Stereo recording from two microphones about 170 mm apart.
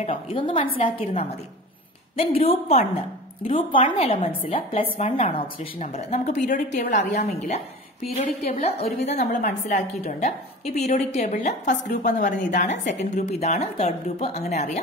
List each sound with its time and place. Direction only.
0.0 s a woman's voice: 30° left (ahead or behind)